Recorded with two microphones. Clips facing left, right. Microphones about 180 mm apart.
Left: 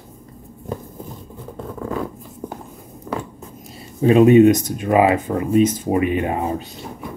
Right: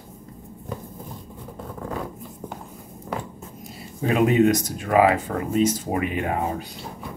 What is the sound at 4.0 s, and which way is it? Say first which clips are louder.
Speech: left 8 dB; 25° left (ahead or behind).